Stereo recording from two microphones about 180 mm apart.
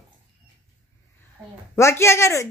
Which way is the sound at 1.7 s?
15° left (ahead or behind).